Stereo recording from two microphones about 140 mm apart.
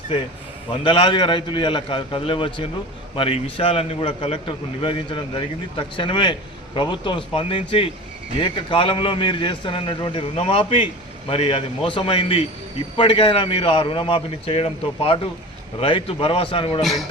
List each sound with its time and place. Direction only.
0.7 s a man's voice: 35° left (ahead or behind)
16.8 s a man's voice: centre (ahead or behind)